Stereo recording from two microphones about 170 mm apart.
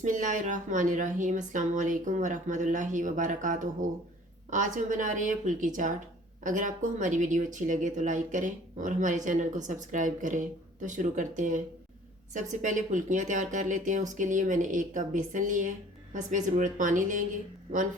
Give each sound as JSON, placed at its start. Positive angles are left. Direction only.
{"t": 0.0, "sound": "speech", "side_deg": -50}